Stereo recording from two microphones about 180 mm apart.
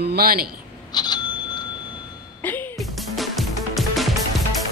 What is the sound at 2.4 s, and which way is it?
Music, 10° left (ahead or behind).